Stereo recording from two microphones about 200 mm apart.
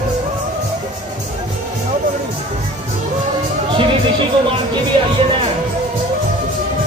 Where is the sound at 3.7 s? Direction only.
25° right (ahead or behind).